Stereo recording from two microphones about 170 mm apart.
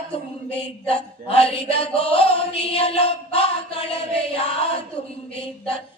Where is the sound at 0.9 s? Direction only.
35° left (ahead or behind).